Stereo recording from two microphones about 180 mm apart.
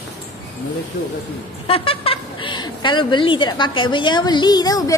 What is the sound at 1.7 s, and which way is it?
Speech, 30° left (ahead or behind).